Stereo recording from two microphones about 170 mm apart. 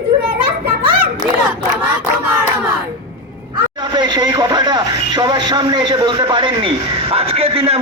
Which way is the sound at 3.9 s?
25° right (ahead or behind).